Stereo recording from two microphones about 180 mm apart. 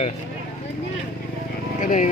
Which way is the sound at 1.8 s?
45° left (ahead or behind).